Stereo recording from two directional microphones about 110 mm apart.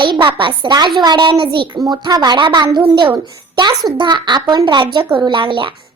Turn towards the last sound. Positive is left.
turn(degrees=-50)  # may be behind; listen again after turning